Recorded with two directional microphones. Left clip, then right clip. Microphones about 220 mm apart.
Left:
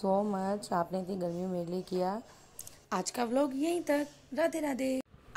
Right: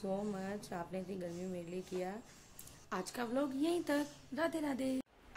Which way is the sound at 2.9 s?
20° left (ahead or behind).